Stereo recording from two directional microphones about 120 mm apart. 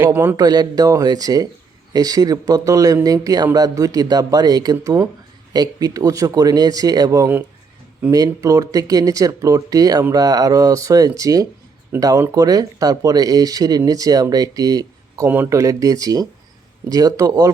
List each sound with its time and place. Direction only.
0.0 s speech: 15° right (ahead or behind)
0.3 s speech: 35° right (ahead or behind)
15.3 s speech: 20° right (ahead or behind)